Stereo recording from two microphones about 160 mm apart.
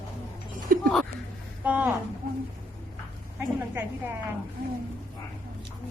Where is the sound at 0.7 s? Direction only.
60° right (ahead or behind).